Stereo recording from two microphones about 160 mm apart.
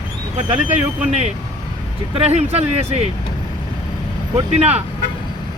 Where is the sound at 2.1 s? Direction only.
40° right (ahead or behind).